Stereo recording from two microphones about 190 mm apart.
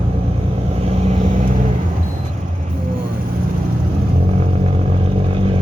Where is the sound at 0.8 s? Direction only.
30° right (ahead or behind).